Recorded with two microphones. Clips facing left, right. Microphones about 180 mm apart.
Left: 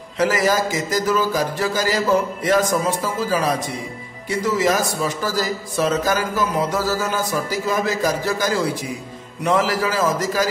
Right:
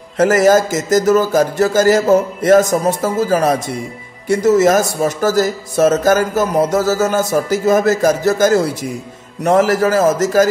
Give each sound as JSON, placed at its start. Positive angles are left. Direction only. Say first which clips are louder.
{"t": 0.2, "sound": "a man's voice", "louder": "right 8 dB", "side_deg": -45}